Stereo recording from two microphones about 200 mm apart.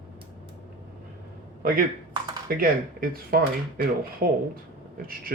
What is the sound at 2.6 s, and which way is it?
Speech, 45° right (ahead or behind).